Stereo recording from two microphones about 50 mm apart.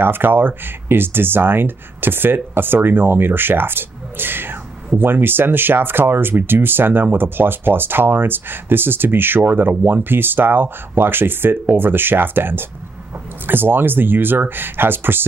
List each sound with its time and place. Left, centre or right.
0.0 s speech: right